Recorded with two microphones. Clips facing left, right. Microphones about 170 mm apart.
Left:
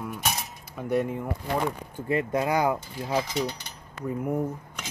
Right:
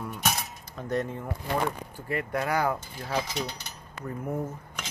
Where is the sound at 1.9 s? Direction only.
20° left (ahead or behind).